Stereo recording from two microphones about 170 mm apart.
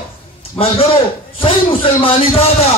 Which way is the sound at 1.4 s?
30° left (ahead or behind).